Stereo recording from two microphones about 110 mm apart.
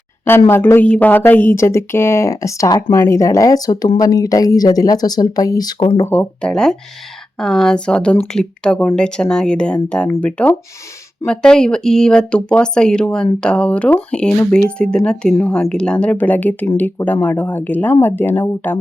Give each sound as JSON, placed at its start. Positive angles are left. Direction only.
{"t": 0.3, "sound": "speech", "side_deg": 20}
{"t": 6.1, "sound": "speech", "side_deg": 10}